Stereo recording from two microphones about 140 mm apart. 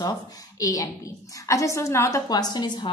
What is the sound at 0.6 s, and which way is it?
A woman's voice, 25° left (ahead or behind).